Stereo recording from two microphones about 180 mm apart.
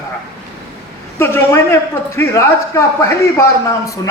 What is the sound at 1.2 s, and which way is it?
A man's voice, 15° left (ahead or behind).